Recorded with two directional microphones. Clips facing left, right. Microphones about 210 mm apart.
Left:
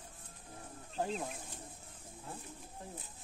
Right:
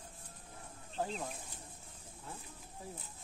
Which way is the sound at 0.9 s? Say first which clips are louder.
Left 2 dB; 5° left (ahead or behind).